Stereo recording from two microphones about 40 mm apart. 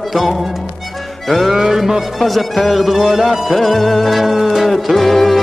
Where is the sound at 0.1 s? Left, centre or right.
Centre.